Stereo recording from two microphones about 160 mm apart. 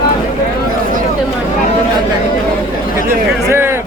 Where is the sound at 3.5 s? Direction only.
15° right (ahead or behind).